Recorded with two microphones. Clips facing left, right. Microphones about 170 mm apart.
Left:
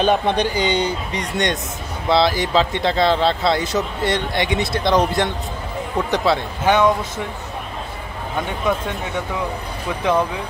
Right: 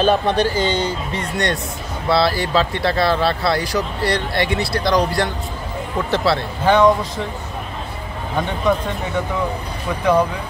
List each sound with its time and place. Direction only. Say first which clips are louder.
0.0 s speech: right 1 dB; 15° left (ahead or behind)